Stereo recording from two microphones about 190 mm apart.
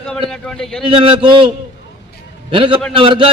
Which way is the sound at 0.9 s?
25° right (ahead or behind).